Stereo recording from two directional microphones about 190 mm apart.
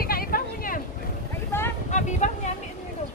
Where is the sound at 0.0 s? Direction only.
50° left (ahead or behind).